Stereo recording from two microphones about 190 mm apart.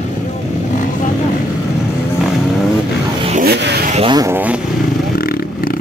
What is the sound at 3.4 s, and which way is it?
Vehicle, 60° right (ahead or behind).